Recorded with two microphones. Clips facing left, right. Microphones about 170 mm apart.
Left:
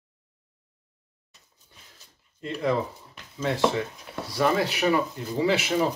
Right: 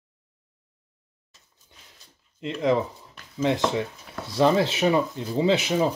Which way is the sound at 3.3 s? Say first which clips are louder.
Right 1 dB; 20° right (ahead or behind).